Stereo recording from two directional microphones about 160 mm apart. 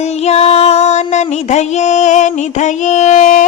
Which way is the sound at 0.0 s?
40° left (ahead or behind).